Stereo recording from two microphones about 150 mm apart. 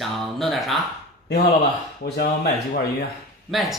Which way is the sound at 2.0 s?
90° left.